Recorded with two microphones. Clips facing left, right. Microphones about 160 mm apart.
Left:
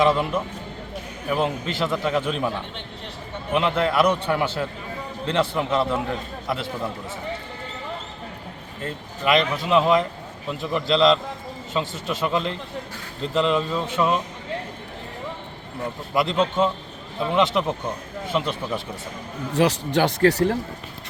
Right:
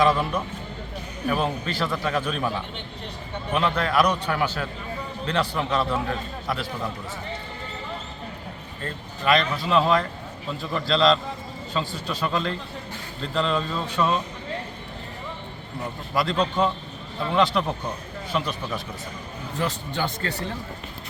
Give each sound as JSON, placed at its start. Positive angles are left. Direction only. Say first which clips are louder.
{"t": 0.0, "sound": "a man's voice", "louder": "left 1 dB", "side_deg": 25}
{"t": 3.5, "sound": "a man's voice", "louder": "left 2 dB", "side_deg": 20}
{"t": 8.8, "sound": "a man's voice", "louder": "left 2 dB", "side_deg": 20}
{"t": 16.1, "sound": "a man's voice", "louder": "left 2 dB", "side_deg": 20}
{"t": 19.5, "sound": "a man's voice", "louder": "left 8 dB", "side_deg": 90}